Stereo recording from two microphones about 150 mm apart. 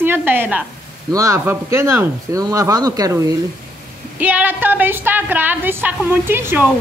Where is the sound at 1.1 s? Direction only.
20° right (ahead or behind).